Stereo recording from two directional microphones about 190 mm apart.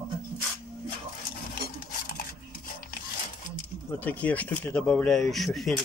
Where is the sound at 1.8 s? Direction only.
45° left (ahead or behind).